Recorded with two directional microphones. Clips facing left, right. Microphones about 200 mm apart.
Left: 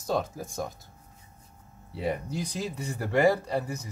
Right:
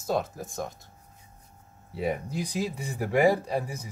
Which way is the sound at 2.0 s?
10° right (ahead or behind).